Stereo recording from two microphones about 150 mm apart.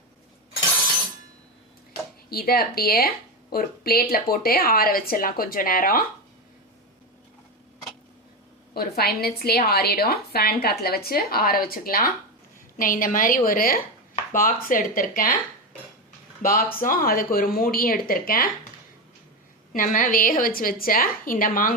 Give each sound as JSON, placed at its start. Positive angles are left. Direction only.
{"t": 2.3, "sound": "a woman's voice", "side_deg": 90}
{"t": 8.7, "sound": "a woman's voice", "side_deg": 90}
{"t": 16.4, "sound": "a woman's voice", "side_deg": 70}
{"t": 19.7, "sound": "a woman's voice", "side_deg": 65}